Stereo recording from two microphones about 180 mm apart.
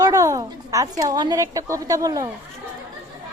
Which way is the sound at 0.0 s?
20° right (ahead or behind).